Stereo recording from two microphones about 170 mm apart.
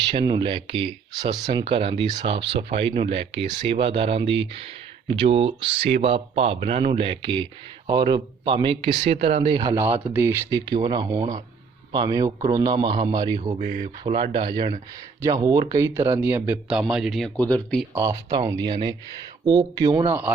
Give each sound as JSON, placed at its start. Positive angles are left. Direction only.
{"t": 0.1, "sound": "a man's voice", "side_deg": -30}
{"t": 10.7, "sound": "a man's voice", "side_deg": -25}
{"t": 13.6, "sound": "speech", "side_deg": -50}
{"t": 14.0, "sound": "a man's voice", "side_deg": -30}
{"t": 17.9, "sound": "a man's voice", "side_deg": -15}
{"t": 20.1, "sound": "a man's voice", "side_deg": -10}